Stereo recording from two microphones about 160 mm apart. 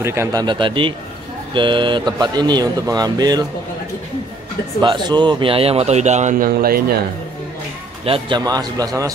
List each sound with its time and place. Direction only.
0.0 s a man's voice: 15° right (ahead or behind)
4.8 s a man's voice: 30° right (ahead or behind); by 7.0 s 70° right (ahead or behind)
8.0 s a man's voice: 30° right (ahead or behind)